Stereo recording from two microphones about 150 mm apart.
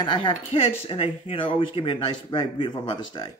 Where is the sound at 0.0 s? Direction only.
30° left (ahead or behind).